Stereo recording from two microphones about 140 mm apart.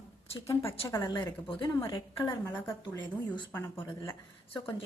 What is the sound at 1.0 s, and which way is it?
Speech, 35° left (ahead or behind).